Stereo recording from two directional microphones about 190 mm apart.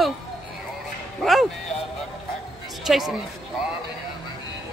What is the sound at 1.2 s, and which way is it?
Speech, centre (ahead or behind).